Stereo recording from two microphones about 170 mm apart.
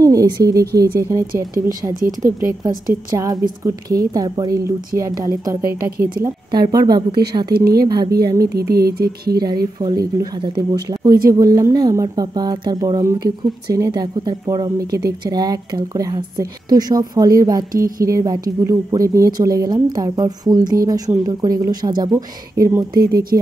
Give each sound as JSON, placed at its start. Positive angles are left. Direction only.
{"t": 0.0, "sound": "a woman's voice", "side_deg": -20}
{"t": 1.2, "sound": "speech", "side_deg": -55}
{"t": 2.9, "sound": "a woman's voice", "side_deg": -20}
{"t": 5.7, "sound": "speech", "side_deg": -65}
{"t": 6.2, "sound": "a woman's voice", "side_deg": -25}
{"t": 7.5, "sound": "speech", "side_deg": -65}
{"t": 7.8, "sound": "a woman's voice", "side_deg": -25}
{"t": 8.5, "sound": "speech", "side_deg": -65}
{"t": 9.8, "sound": "a woman's voice", "side_deg": -25}
{"t": 17.7, "sound": "speech", "side_deg": -55}
{"t": 18.0, "sound": "a woman's voice", "side_deg": -20}